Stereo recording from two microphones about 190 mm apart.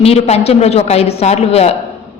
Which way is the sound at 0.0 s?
35° left (ahead or behind).